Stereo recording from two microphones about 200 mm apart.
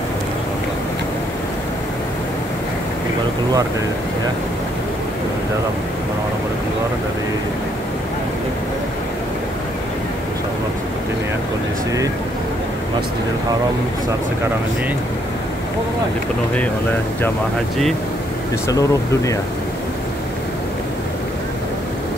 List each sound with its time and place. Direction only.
18.7 s speech: 15° left (ahead or behind)